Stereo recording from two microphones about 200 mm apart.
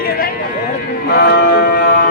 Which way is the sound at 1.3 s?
55° left (ahead or behind).